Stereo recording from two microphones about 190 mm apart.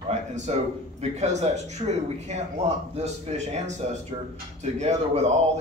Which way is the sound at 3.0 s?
35° right (ahead or behind).